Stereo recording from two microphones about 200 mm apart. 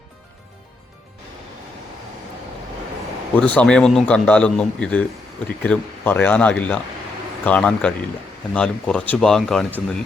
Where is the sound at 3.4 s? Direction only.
5° left (ahead or behind).